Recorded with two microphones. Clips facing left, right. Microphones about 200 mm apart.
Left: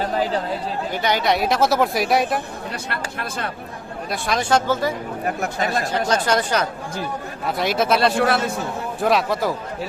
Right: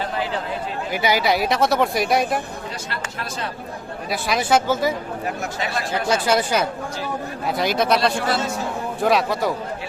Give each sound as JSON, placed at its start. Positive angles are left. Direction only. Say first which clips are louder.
{"t": 0.0, "sound": "chatter", "louder": "left 4 dB", "side_deg": 40}
{"t": 0.9, "sound": "speech", "louder": "right 1 dB", "side_deg": -10}
{"t": 2.9, "sound": "speech", "louder": "left 2 dB", "side_deg": 55}
{"t": 4.1, "sound": "speech", "louder": "right 1 dB", "side_deg": -5}
{"t": 5.2, "sound": "speech", "louder": "left 6 dB", "side_deg": 50}
{"t": 6.1, "sound": "speech", "louder": "right 3 dB", "side_deg": -10}
{"t": 8.2, "sound": "speech", "louder": "left 3 dB", "side_deg": 60}
{"t": 9.0, "sound": "speech", "louder": "even", "side_deg": 0}